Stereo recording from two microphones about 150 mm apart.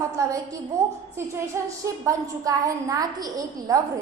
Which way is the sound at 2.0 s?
20° right (ahead or behind).